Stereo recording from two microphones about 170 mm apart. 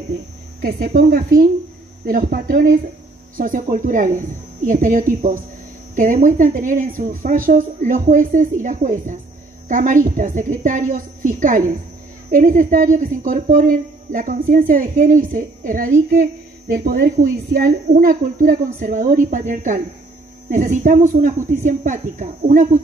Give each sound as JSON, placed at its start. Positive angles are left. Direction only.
{"t": 0.6, "sound": "a woman's voice", "side_deg": -65}